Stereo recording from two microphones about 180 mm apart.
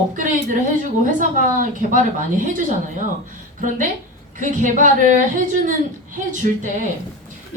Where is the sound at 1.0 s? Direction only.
45° right (ahead or behind).